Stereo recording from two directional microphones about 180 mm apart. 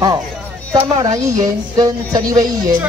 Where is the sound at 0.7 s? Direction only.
20° right (ahead or behind).